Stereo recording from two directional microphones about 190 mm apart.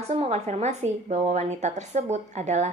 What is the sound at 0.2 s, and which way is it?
A woman's voice, 35° right (ahead or behind).